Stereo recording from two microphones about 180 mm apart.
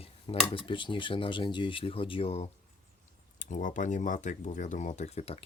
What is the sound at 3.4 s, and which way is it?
Speech, 45° left (ahead or behind).